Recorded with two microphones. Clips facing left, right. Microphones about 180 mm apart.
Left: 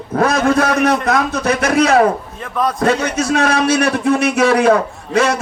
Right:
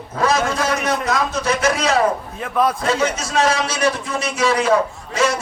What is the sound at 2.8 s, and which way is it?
A man's voice, 60° left (ahead or behind).